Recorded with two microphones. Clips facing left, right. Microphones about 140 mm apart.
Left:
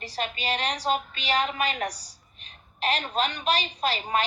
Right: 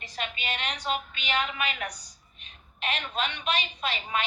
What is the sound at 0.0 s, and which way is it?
A woman's voice, 35° left (ahead or behind).